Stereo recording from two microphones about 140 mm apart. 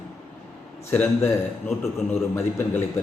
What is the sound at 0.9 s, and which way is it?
Speech, 15° left (ahead or behind).